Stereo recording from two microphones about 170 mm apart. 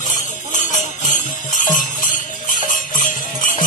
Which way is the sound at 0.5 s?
50° left (ahead or behind).